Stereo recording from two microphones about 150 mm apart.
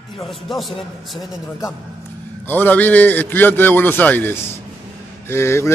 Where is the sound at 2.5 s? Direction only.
10° left (ahead or behind).